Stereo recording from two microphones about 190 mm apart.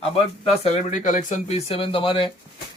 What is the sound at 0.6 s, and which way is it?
Speech, 35° left (ahead or behind).